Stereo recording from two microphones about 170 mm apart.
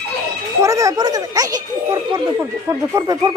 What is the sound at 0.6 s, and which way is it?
A woman's voice, 20° right (ahead or behind).